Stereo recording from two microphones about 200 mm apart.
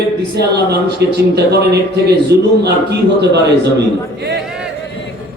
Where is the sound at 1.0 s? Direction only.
55° right (ahead or behind).